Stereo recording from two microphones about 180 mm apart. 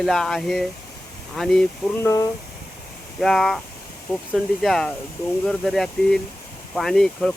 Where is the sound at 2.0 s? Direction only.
15° left (ahead or behind).